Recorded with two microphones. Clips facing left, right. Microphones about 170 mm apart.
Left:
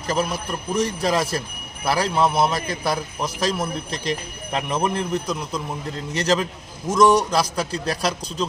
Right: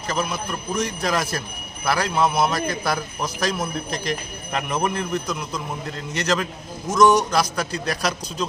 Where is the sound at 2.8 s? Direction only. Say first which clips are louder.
Left 1 dB; 30° left (ahead or behind).